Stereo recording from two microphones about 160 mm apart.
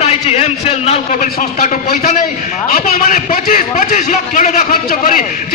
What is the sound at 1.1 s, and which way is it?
A man's voice, 65° left (ahead or behind).